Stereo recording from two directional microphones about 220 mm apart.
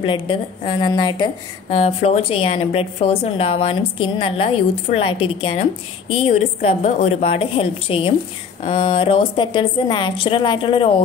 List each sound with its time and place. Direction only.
0.0 s a woman's voice: 20° left (ahead or behind)
1.7 s a woman's voice: 30° left (ahead or behind)